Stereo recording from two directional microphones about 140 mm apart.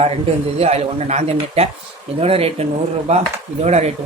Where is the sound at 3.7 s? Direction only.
50° right (ahead or behind).